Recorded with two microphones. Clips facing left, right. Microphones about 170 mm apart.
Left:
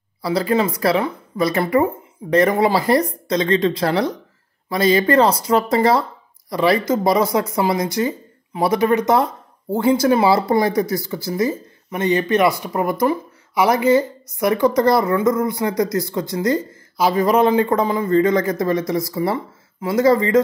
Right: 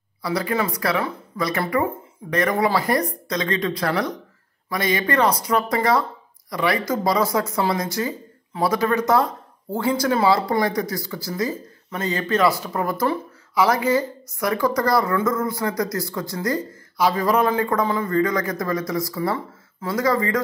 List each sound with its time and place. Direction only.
0.2 s speech: 30° left (ahead or behind)